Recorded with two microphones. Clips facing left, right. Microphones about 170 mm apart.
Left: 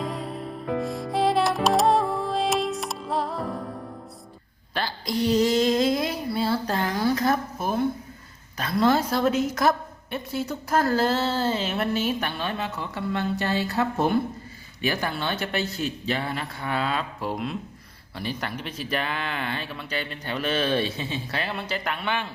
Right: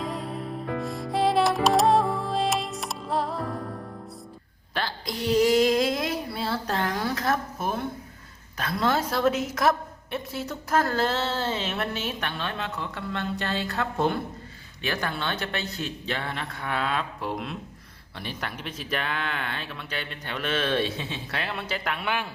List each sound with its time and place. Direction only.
0.0 s music: centre (ahead or behind)
4.7 s female singing: centre (ahead or behind)
8.5 s a woman's voice: centre (ahead or behind)